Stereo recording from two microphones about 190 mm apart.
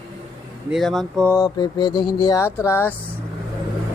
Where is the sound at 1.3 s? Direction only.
20° left (ahead or behind).